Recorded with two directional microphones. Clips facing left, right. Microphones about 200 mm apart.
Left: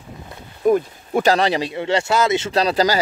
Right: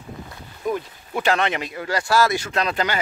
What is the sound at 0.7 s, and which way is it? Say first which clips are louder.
Speech: left 9 dB; 45° left (ahead or behind).